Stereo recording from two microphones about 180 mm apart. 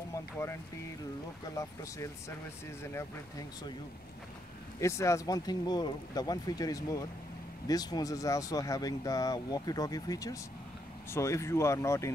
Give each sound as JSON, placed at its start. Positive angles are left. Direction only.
{"t": 0.1, "sound": "speech", "side_deg": 15}
{"t": 4.7, "sound": "speech", "side_deg": 15}